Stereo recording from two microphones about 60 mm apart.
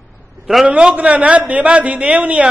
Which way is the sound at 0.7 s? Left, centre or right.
Centre.